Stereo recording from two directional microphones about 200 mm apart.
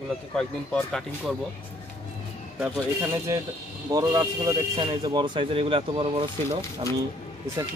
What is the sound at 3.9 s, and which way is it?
Speech, 15° right (ahead or behind).